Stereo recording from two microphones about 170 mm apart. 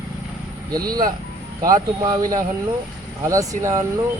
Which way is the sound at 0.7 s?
20° right (ahead or behind).